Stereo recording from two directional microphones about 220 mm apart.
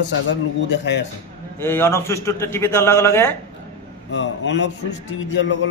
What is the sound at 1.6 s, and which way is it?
A man's voice, 10° left (ahead or behind).